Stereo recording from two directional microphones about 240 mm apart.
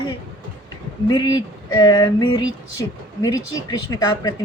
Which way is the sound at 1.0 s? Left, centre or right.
Centre.